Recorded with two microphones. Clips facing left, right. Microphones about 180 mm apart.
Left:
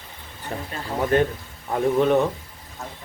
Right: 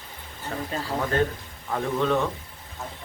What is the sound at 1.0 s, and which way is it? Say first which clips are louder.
A man's voice: left 6 dB; 20° left (ahead or behind).